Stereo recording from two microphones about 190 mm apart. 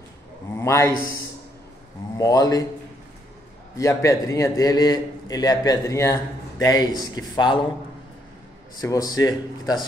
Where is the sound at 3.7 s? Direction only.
15° left (ahead or behind).